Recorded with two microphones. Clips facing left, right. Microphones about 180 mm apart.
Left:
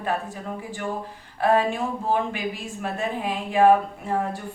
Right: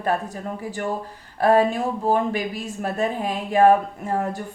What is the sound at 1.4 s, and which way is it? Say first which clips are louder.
A woman's voice: right 3 dB; 40° right (ahead or behind).